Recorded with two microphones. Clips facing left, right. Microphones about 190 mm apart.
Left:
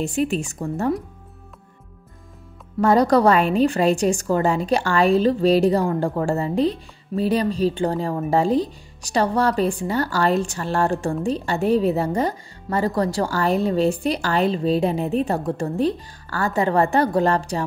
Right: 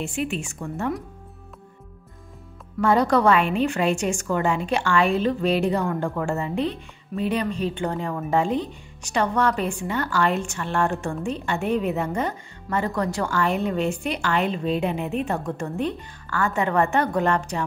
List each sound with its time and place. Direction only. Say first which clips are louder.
0.0 s a woman's voice: left 5 dB; 40° left (ahead or behind)
2.8 s a woman's voice: left 3 dB; 40° left (ahead or behind)